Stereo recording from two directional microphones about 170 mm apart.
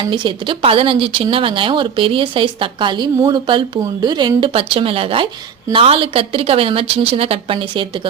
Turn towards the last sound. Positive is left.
turn(degrees=-30)  # may be behind; listen again after turning